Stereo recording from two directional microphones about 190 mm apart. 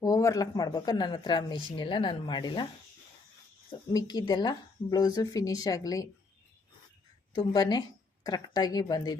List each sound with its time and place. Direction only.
0.0 s speech: 15° left (ahead or behind)
3.7 s speech: 20° left (ahead or behind)
7.3 s speech: 25° left (ahead or behind)